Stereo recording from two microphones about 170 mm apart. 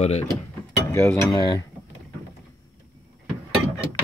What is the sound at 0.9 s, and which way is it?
Speech, 20° left (ahead or behind).